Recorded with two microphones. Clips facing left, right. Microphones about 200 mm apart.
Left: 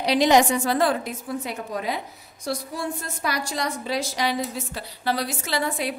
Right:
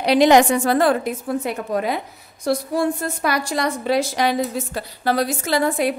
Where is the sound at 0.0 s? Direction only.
60° right (ahead or behind).